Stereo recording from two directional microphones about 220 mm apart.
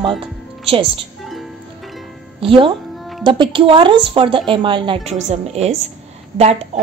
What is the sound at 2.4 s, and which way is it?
A woman's voice, 25° right (ahead or behind).